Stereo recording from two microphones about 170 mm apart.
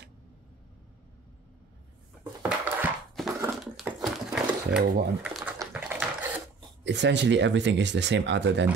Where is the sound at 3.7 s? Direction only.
Centre (ahead or behind).